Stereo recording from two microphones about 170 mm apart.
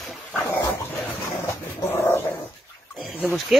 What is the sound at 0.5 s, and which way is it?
Dog, 15° left (ahead or behind).